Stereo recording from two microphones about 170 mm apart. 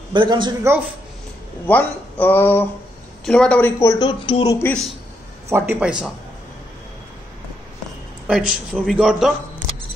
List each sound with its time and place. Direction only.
0.1 s a man's voice: 25° right (ahead or behind)
1.7 s speech: 10° left (ahead or behind)
3.8 s speech: 20° left (ahead or behind)
4.6 s speech: 10° left (ahead or behind)
5.5 s speech: 10° right (ahead or behind)
8.3 s a man's voice: 5° right (ahead or behind)